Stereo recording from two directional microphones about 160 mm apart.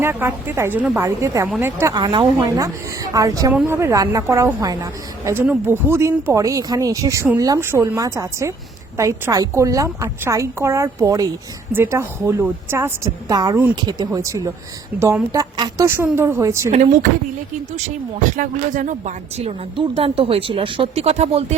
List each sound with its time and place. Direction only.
0.0 s a woman's voice: 15° right (ahead or behind)
16.7 s speech: 45° right (ahead or behind)